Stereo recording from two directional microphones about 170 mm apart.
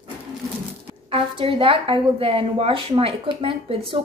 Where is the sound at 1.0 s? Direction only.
30° right (ahead or behind).